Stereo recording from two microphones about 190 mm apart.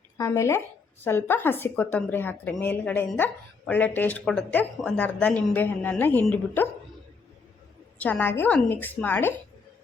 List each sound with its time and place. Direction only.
0.2 s a woman's voice: 15° left (ahead or behind)
7.9 s a woman's voice: 10° left (ahead or behind)